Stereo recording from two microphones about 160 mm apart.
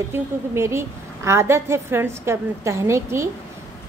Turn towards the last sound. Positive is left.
turn(degrees=-15)  # may be behind; listen again after turning